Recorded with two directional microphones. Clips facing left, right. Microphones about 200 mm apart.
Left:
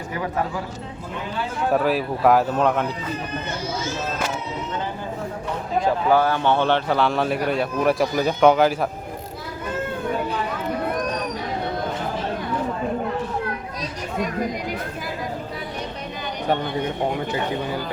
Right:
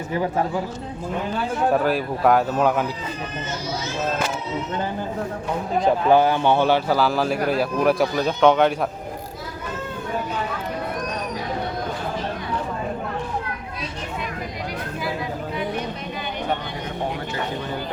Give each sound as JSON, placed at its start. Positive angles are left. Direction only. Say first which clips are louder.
{"t": 0.1, "sound": "speech", "louder": "right 3 dB", "side_deg": -30}
{"t": 1.7, "sound": "a man's voice", "louder": "even", "side_deg": 0}
{"t": 5.8, "sound": "a man's voice", "louder": "right 2 dB", "side_deg": -20}